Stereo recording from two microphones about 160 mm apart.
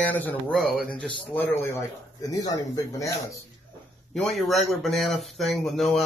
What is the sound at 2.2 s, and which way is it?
Speech, 25° left (ahead or behind).